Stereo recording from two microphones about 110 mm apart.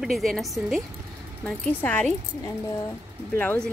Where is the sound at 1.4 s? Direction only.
15° left (ahead or behind).